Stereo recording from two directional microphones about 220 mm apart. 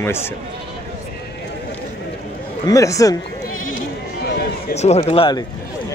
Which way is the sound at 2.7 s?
15° left (ahead or behind).